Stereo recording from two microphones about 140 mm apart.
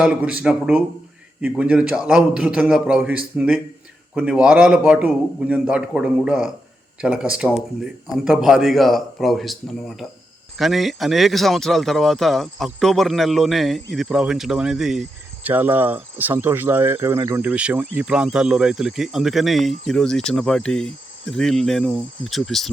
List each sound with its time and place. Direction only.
0.0 s a man's voice: 10° right (ahead or behind)
15.4 s a man's voice: 15° right (ahead or behind)
17.5 s speech: 10° right (ahead or behind)